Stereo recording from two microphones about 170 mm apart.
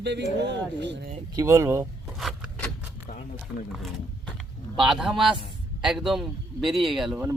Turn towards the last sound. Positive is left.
turn(degrees=0)  # may be behind; listen again after turning